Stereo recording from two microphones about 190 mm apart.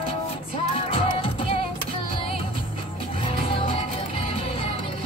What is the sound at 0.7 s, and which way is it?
Music, 30° left (ahead or behind).